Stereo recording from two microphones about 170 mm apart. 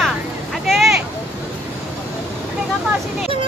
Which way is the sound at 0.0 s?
Centre (ahead or behind).